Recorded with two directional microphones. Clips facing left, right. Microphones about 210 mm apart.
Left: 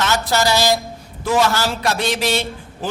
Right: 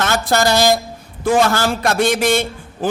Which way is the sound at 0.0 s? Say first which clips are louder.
Right 2 dB; 50° right (ahead or behind).